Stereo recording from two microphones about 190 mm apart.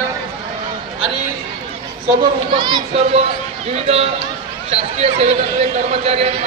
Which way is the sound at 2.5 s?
25° right (ahead or behind).